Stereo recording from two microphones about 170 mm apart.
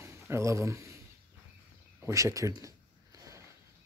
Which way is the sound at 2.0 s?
20° right (ahead or behind).